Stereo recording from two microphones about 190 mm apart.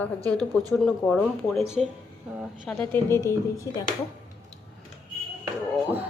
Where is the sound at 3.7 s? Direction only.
20° left (ahead or behind).